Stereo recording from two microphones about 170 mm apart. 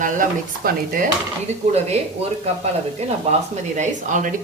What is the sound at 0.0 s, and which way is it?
Speech, 55° right (ahead or behind).